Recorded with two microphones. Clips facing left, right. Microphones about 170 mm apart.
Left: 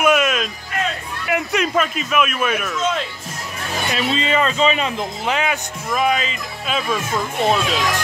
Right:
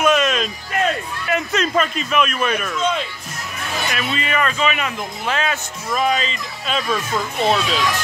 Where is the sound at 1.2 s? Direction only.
15° left (ahead or behind).